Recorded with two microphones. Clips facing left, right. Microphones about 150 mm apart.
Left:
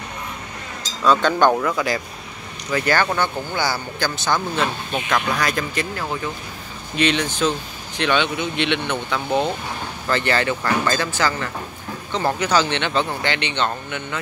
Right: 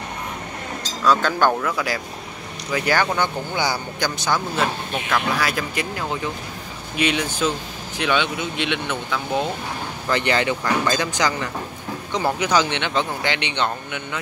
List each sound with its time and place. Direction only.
1.0 s speech: 5° right (ahead or behind)
2.7 s speech: 10° right (ahead or behind)
10.0 s speech: 15° right (ahead or behind)